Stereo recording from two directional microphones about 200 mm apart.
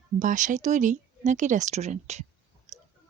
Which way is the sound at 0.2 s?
40° right (ahead or behind).